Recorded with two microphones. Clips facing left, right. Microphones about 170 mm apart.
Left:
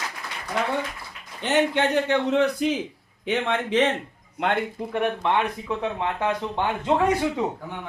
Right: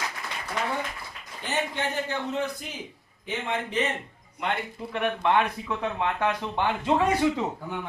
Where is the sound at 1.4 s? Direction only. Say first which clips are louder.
Left 8 dB; 75° left (ahead or behind).